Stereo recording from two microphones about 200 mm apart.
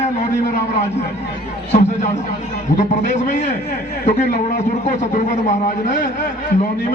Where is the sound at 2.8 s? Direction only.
35° left (ahead or behind).